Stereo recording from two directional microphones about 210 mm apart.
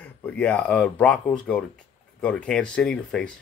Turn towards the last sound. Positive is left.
turn(degrees=5)  # may be behind; listen again after turning